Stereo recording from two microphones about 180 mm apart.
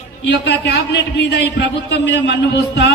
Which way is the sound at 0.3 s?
70° left (ahead or behind).